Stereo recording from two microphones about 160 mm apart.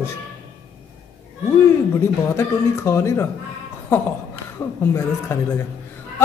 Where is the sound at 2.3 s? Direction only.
15° left (ahead or behind).